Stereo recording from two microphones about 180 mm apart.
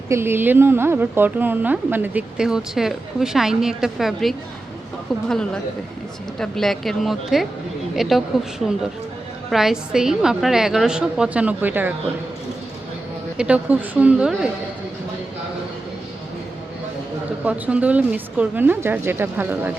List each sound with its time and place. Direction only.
0.1 s a woman's voice: 15° right (ahead or behind)
13.3 s speech: 5° right (ahead or behind)
17.4 s speech: 10° right (ahead or behind)